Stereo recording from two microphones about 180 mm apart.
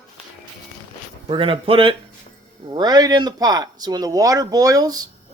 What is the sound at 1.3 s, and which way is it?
Speech, 30° right (ahead or behind).